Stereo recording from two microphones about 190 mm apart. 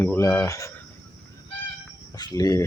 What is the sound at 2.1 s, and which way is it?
Speech, 20° left (ahead or behind).